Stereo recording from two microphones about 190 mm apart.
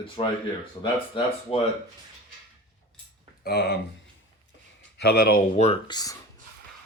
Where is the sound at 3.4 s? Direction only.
60° left (ahead or behind).